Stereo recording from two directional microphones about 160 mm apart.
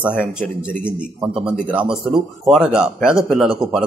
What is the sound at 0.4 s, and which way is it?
A man's voice, 5° right (ahead or behind).